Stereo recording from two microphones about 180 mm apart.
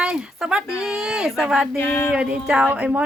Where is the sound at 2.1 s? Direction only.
5° right (ahead or behind).